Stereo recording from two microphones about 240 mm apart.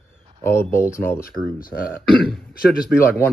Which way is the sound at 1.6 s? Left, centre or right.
Left.